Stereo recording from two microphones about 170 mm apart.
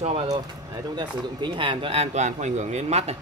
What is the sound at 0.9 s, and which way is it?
Speech, 25° right (ahead or behind).